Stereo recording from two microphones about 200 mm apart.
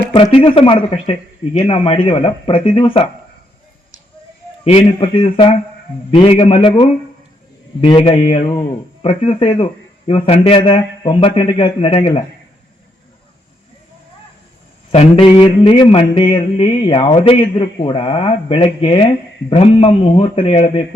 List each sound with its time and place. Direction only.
0.1 s mantra: 25° left (ahead or behind)
4.6 s mantra: 25° left (ahead or behind)
14.9 s mantra: 25° left (ahead or behind)